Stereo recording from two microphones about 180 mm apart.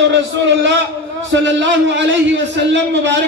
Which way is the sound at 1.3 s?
90° right.